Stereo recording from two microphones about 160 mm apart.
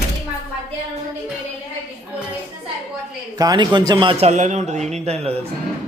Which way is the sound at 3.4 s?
25° right (ahead or behind).